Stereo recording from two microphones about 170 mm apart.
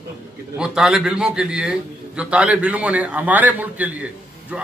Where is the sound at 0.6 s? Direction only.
5° right (ahead or behind).